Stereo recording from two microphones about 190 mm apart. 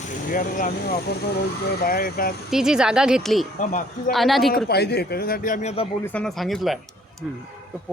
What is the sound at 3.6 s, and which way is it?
Speech, 40° left (ahead or behind).